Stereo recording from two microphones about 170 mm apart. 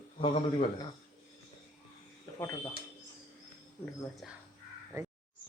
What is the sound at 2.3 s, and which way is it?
Speech, 15° left (ahead or behind).